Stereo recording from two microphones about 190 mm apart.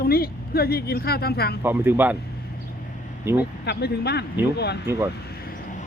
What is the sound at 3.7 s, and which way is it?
Speech, 60° left (ahead or behind).